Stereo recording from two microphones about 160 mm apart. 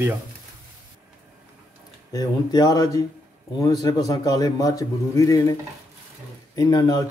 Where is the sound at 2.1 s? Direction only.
25° left (ahead or behind).